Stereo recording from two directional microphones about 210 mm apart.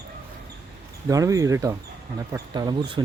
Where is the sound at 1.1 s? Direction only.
15° right (ahead or behind).